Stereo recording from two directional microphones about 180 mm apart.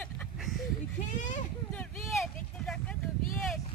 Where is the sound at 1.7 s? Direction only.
5° left (ahead or behind).